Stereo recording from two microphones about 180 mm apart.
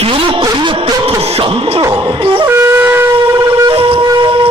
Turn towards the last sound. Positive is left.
turn(degrees=-25)  # may be behind; listen again after turning